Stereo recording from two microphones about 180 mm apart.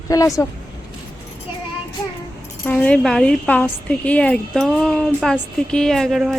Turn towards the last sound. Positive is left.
turn(degrees=0)  # may be behind; listen again after turning